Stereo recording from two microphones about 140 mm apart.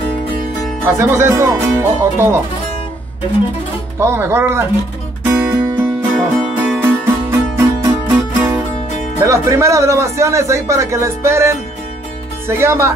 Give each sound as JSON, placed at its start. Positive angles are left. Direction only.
{"t": 0.8, "sound": "speech", "side_deg": -20}
{"t": 4.0, "sound": "speech", "side_deg": -15}
{"t": 5.2, "sound": "music", "side_deg": -15}
{"t": 9.2, "sound": "speech", "side_deg": -20}